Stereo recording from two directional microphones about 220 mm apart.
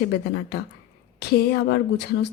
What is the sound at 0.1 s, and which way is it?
Speech, 50° left (ahead or behind).